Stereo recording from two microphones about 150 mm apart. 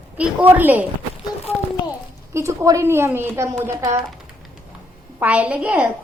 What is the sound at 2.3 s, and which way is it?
A woman's voice, 20° right (ahead or behind).